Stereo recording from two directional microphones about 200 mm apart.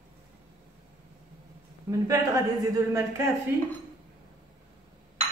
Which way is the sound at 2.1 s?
15° right (ahead or behind).